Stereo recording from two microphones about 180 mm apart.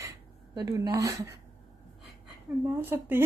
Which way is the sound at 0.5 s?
20° right (ahead or behind).